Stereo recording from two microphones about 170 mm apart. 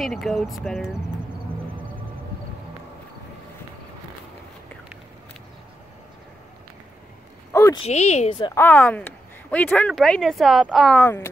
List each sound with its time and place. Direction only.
0.0 s speech: centre (ahead or behind)
7.5 s a sound: 15° left (ahead or behind)
7.8 s speech: 40° left (ahead or behind)
8.5 s speech: 10° left (ahead or behind)
11.0 s speech: 15° left (ahead or behind)